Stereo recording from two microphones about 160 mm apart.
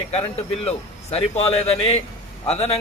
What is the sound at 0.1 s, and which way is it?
A man's voice, 40° left (ahead or behind).